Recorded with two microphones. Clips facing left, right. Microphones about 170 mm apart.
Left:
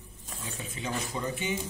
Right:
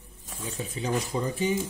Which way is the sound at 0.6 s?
35° right (ahead or behind).